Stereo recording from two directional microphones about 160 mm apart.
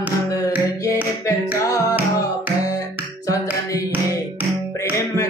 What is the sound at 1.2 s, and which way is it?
Music, 20° left (ahead or behind).